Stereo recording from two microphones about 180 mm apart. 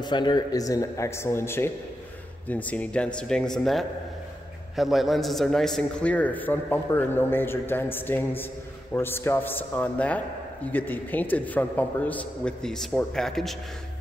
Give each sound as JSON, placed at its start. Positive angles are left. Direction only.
{"t": 0.0, "sound": "a man's voice", "side_deg": 25}